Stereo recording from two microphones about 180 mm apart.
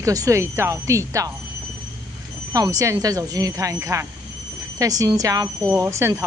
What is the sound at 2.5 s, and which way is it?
A woman's voice, 20° right (ahead or behind).